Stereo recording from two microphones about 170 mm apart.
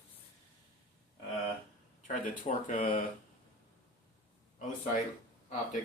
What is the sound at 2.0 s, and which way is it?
Speech, 50° left (ahead or behind).